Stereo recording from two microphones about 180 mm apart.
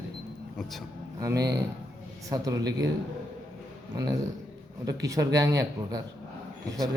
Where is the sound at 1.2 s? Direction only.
20° right (ahead or behind).